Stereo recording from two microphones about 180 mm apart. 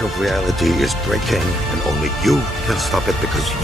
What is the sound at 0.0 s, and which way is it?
Speech, centre (ahead or behind).